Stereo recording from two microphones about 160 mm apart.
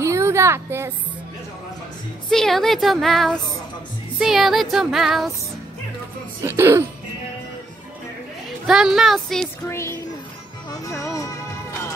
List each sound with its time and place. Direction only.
0.0 s music: 20° right (ahead or behind)
2.2 s speech: centre (ahead or behind)
6.4 s speech: 15° right (ahead or behind)
8.6 s speech: 5° right (ahead or behind)
9.7 s speech: 15° left (ahead or behind)
11.1 s music: 20° left (ahead or behind)